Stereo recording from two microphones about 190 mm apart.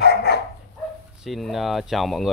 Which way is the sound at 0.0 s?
55° left (ahead or behind).